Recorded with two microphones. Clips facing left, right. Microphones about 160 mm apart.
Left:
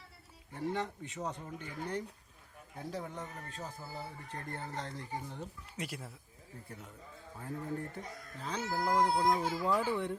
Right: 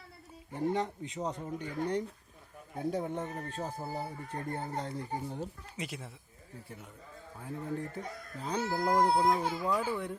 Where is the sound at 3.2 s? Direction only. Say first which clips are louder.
Right 7 dB; 40° right (ahead or behind).